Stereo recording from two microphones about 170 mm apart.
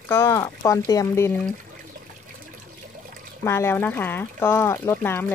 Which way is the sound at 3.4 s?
15° left (ahead or behind).